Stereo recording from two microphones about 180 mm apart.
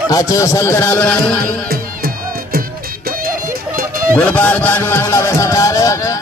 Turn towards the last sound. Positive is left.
turn(degrees=20)  # may be behind; listen again after turning